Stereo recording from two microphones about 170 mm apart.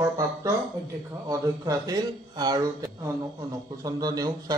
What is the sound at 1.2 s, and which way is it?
Speech, 20° right (ahead or behind).